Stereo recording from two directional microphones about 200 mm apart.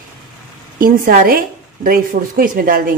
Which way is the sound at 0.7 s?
45° right (ahead or behind).